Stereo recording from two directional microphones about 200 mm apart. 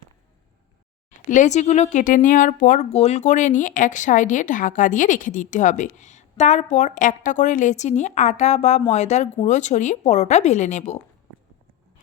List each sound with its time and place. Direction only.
1.3 s speech: 35° left (ahead or behind)